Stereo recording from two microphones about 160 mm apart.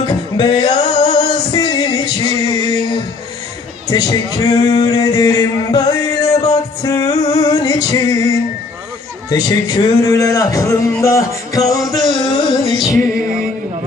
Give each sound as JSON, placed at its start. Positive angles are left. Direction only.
{"t": 0.0, "sound": "music", "side_deg": 25}
{"t": 0.8, "sound": "music", "side_deg": 45}
{"t": 1.2, "sound": "music", "side_deg": 25}
{"t": 3.8, "sound": "a sound", "side_deg": 25}
{"t": 9.3, "sound": "music", "side_deg": 25}